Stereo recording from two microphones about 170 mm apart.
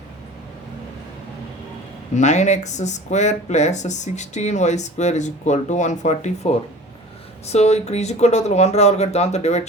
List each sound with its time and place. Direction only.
2.1 s speech: 45° left (ahead or behind)